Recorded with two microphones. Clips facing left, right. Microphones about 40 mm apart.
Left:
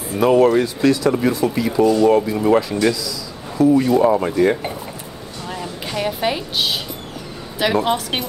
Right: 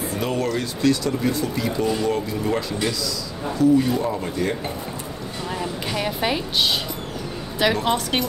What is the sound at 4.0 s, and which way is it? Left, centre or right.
Speech, left.